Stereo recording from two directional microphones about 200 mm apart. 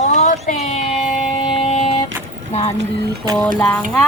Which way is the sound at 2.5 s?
35° left (ahead or behind).